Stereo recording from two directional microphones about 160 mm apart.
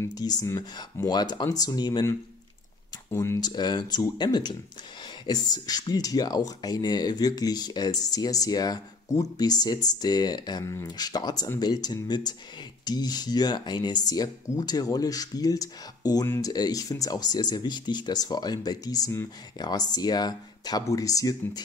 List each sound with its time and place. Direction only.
0.0 s speech: 25° left (ahead or behind)